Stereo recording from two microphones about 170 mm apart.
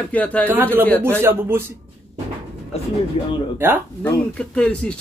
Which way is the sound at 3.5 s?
10° right (ahead or behind).